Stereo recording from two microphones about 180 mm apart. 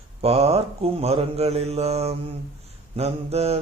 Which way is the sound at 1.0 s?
35° right (ahead or behind).